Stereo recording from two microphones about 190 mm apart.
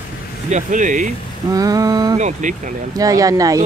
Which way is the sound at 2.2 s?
40° right (ahead or behind).